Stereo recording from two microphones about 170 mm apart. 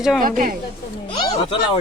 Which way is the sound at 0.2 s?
55° right (ahead or behind).